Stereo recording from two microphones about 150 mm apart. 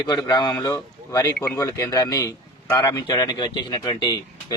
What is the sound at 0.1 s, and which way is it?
A man's voice, 30° left (ahead or behind).